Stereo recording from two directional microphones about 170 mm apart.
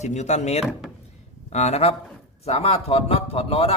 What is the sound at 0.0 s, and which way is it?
A man's voice, 40° left (ahead or behind).